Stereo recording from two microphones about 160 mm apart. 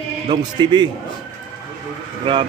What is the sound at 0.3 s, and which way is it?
Speech, 25° right (ahead or behind).